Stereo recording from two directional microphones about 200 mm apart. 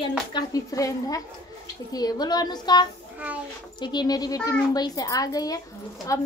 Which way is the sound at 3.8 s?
20° left (ahead or behind).